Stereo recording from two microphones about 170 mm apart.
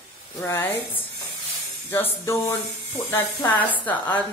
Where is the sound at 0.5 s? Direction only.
15° left (ahead or behind).